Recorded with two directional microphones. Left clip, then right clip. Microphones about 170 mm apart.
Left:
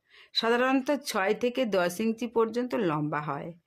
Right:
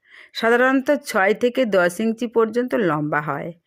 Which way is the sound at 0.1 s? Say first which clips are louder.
Right 8 dB; 30° right (ahead or behind).